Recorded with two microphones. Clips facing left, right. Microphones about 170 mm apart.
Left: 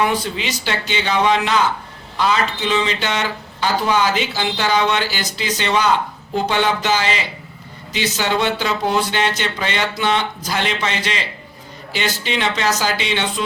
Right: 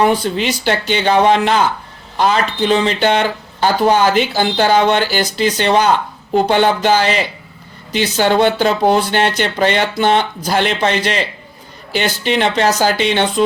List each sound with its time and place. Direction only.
0.3 s speech: 50° right (ahead or behind)